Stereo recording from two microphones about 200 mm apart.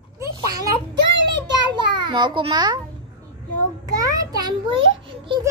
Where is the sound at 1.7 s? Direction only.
20° right (ahead or behind).